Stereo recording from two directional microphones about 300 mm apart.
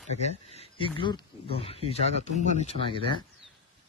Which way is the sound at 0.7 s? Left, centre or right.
Centre.